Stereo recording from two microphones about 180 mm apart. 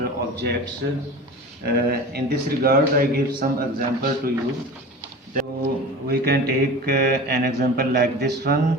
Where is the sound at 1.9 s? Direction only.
60° right (ahead or behind).